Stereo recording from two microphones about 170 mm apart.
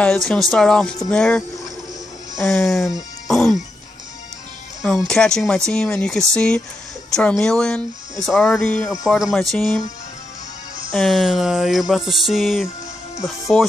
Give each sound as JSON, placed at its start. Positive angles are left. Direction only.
{"t": 0.0, "sound": "speech", "side_deg": 5}
{"t": 4.8, "sound": "speech", "side_deg": 5}
{"t": 10.9, "sound": "speech", "side_deg": 0}